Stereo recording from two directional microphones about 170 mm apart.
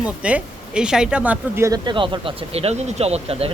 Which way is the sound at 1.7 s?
25° right (ahead or behind).